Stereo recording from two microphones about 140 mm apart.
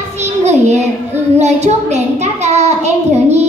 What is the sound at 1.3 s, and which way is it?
A child's voice, 55° right (ahead or behind).